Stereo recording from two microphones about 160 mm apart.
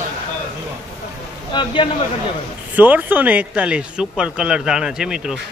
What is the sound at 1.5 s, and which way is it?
Speech, 30° left (ahead or behind).